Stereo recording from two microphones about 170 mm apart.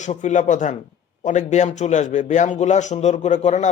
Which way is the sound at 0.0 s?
45° left (ahead or behind).